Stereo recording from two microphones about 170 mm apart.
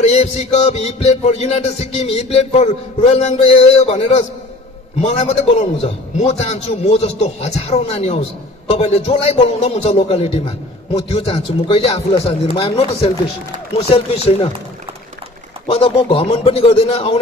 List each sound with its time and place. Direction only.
0.1 s a man's voice: 40° left (ahead or behind)
5.0 s a man's voice: 40° left (ahead or behind)
15.6 s a man's voice: 30° left (ahead or behind)